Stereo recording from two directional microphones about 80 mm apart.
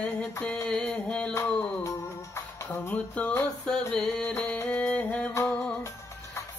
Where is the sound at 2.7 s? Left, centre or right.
Centre.